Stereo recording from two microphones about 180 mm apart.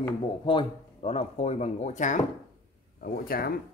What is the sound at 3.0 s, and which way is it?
Speech, 55° left (ahead or behind).